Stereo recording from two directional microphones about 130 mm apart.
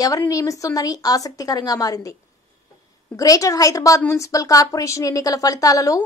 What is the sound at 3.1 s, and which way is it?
A woman's voice, 25° left (ahead or behind).